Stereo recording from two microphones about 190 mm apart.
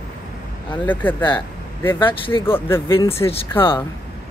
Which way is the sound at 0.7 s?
10° left (ahead or behind).